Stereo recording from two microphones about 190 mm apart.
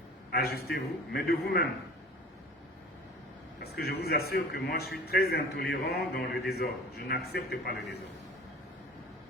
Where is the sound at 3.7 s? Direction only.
55° left (ahead or behind).